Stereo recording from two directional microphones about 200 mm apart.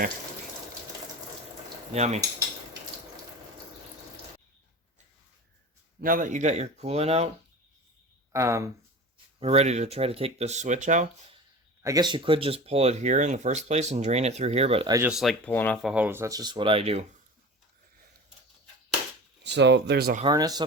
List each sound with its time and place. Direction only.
1.9 s speech: 35° right (ahead or behind)
6.0 s speech: 45° right (ahead or behind)
8.3 s speech: 15° right (ahead or behind)
9.4 s speech: 30° right (ahead or behind)
11.8 s speech: 15° right (ahead or behind)
15.1 s speech: centre (ahead or behind); by 17.1 s 30° right (ahead or behind)
19.5 s speech: 60° right (ahead or behind)
20.2 s speech: 20° right (ahead or behind)